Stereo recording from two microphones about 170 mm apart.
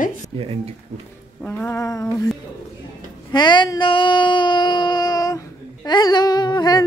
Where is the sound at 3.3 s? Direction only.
25° left (ahead or behind).